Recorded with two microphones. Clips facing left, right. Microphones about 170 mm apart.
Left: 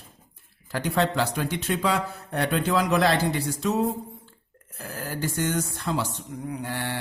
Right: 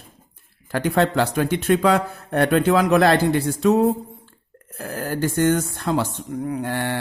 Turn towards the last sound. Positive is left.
turn(degrees=-55)  # may be behind; listen again after turning